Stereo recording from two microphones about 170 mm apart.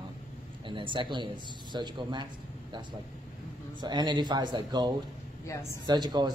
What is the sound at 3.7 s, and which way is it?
Speech, 25° right (ahead or behind).